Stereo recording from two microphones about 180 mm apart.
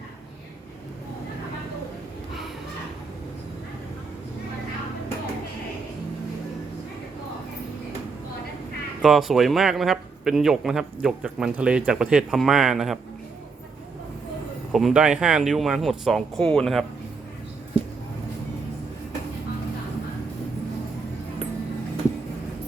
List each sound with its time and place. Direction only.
9.0 s speech: centre (ahead or behind)
14.7 s speech: centre (ahead or behind)